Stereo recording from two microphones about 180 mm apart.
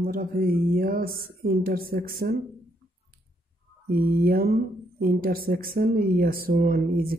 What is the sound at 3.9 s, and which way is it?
Speech, 55° right (ahead or behind).